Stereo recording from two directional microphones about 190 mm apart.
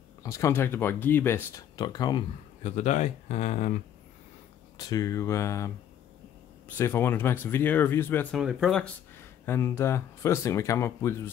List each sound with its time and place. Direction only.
0.2 s speech: 15° left (ahead or behind)
2.6 s speech: 40° left (ahead or behind)
4.7 s speech: 20° left (ahead or behind)
6.8 s speech: 10° left (ahead or behind)
8.4 s speech: centre (ahead or behind)
9.5 s speech: 15° left (ahead or behind)